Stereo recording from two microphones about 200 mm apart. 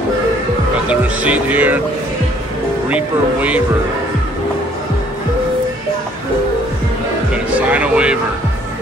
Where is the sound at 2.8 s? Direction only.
5° right (ahead or behind).